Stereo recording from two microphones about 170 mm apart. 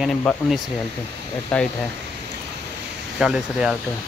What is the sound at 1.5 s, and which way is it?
Speech, 5° left (ahead or behind).